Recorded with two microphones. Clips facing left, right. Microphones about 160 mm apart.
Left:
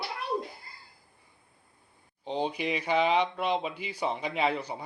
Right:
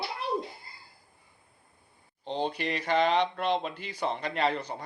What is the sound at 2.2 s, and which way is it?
Speech, 10° left (ahead or behind).